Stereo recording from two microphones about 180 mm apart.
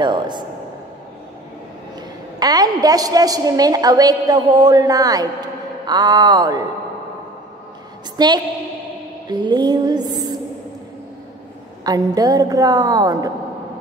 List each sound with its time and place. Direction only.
0.0 s a woman's voice: 25° right (ahead or behind)
2.0 s a woman's voice: 20° right (ahead or behind)
8.2 s a woman's voice: 25° right (ahead or behind)
11.8 s a woman's voice: 20° right (ahead or behind)